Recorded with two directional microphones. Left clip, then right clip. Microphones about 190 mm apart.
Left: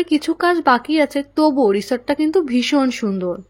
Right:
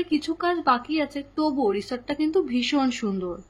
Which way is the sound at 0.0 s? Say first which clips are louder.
Left 8 dB; 35° left (ahead or behind).